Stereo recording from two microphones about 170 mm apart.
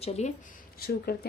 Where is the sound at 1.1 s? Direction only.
65° left (ahead or behind).